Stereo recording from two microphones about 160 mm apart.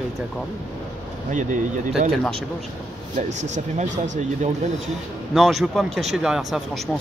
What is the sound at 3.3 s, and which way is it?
Speech, 50° right (ahead or behind).